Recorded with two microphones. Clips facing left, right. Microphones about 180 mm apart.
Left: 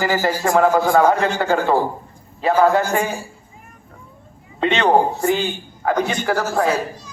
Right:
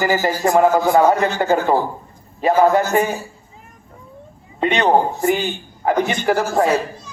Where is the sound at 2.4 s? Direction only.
15° right (ahead or behind).